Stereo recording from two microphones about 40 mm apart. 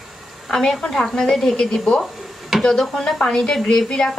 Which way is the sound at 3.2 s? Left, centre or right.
Centre.